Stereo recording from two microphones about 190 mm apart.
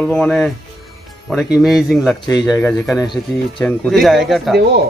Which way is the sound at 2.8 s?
Centre (ahead or behind).